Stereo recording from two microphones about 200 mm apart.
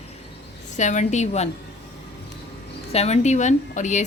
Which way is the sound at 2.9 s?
30° left (ahead or behind).